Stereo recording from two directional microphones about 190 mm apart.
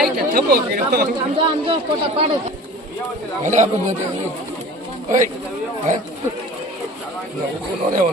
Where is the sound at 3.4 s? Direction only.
40° right (ahead or behind).